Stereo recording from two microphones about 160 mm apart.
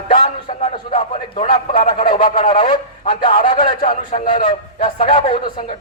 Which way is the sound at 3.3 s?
60° left (ahead or behind).